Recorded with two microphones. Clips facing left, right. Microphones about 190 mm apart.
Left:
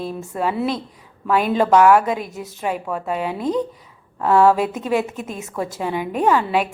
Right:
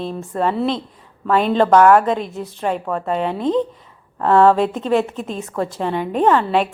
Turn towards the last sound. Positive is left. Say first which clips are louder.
# right 2 dB
turn(degrees=5)  # may be behind; listen again after turning